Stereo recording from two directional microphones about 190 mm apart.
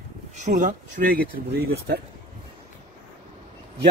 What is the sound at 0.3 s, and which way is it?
Speech, 40° right (ahead or behind).